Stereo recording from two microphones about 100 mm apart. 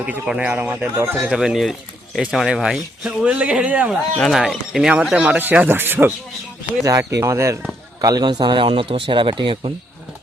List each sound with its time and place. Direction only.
0.0 s speech: 10° right (ahead or behind)
1.3 s speech: 5° right (ahead or behind)
4.2 s speech: centre (ahead or behind); by 6.1 s 20° right (ahead or behind)
7.2 s speech: 30° right (ahead or behind)
8.0 s speech: 45° right (ahead or behind); by 9.7 s 60° right (ahead or behind)